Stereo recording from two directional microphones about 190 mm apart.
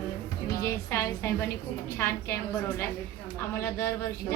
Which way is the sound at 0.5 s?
15° left (ahead or behind).